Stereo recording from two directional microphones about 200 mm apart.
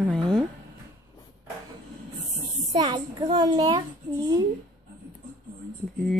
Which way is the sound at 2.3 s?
25° right (ahead or behind).